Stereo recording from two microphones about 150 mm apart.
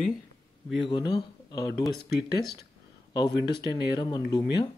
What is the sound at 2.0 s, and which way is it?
Speech, 90° left.